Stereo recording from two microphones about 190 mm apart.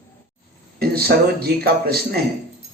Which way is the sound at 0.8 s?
55° right (ahead or behind).